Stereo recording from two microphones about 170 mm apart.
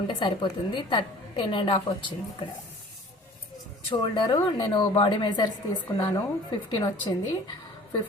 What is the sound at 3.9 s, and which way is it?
A woman's voice, 25° left (ahead or behind).